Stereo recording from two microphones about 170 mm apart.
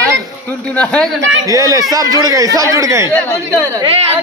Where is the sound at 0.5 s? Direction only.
5° left (ahead or behind).